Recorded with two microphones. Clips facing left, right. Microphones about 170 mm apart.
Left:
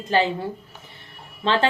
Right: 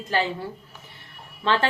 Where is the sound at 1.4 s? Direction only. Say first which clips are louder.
Left 2 dB; 20° left (ahead or behind).